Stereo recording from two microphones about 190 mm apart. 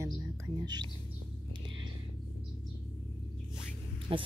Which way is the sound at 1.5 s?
25° right (ahead or behind).